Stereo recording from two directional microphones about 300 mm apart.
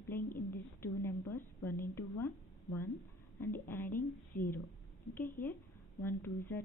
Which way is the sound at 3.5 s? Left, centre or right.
Centre.